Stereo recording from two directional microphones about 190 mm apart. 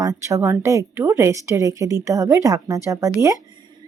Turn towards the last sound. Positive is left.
turn(degrees=-15)  # may be behind; listen again after turning